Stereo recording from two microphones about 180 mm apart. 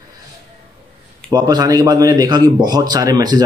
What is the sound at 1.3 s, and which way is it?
Speech, 20° right (ahead or behind).